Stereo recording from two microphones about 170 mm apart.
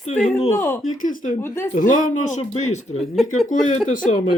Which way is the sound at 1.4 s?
15° left (ahead or behind).